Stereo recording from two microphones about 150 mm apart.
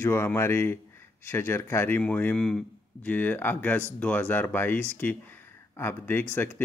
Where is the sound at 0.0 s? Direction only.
15° left (ahead or behind).